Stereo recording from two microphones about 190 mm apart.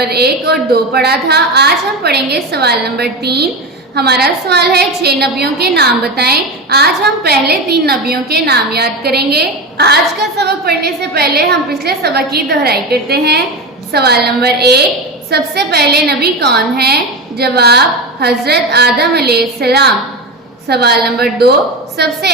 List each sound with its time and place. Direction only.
0.0 s a woman's voice: 60° right (ahead or behind)